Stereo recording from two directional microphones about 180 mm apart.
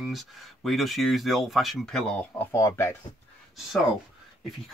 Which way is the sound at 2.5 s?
15° left (ahead or behind).